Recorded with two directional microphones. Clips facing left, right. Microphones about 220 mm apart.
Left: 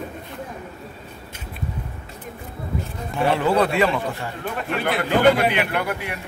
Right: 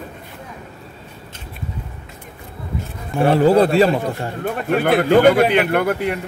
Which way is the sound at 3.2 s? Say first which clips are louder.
Right 6 dB; 40° right (ahead or behind).